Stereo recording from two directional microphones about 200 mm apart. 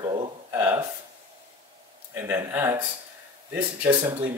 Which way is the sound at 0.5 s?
10° right (ahead or behind).